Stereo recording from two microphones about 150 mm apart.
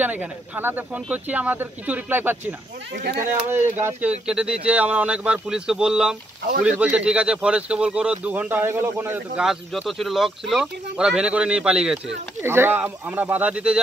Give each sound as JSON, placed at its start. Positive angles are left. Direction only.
{"t": 0.0, "sound": "speech", "side_deg": -10}
{"t": 9.4, "sound": "speech", "side_deg": 0}
{"t": 12.4, "sound": "speech", "side_deg": -15}